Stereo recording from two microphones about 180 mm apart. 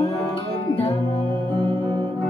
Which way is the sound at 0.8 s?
30° left (ahead or behind).